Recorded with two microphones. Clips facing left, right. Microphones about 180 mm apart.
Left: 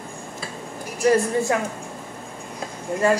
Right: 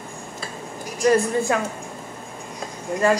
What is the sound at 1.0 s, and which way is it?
Speech, 25° left (ahead or behind).